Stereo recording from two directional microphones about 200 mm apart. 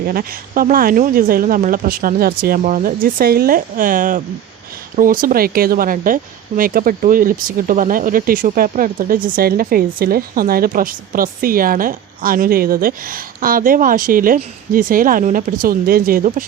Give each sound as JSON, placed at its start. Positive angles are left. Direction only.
{"t": 0.1, "sound": "speech", "side_deg": -45}